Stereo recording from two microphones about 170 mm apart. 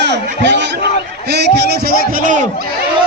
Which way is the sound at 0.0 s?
90° right.